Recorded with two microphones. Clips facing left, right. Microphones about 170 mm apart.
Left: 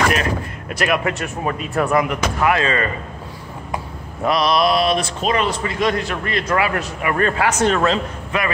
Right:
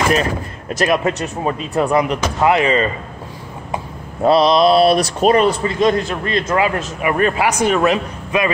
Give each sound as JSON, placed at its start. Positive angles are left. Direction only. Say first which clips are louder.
{"t": 0.1, "sound": "a man's voice", "louder": "right 3 dB", "side_deg": -35}